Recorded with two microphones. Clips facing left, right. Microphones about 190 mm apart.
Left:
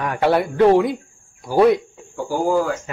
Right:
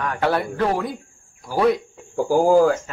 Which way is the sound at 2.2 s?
35° right (ahead or behind).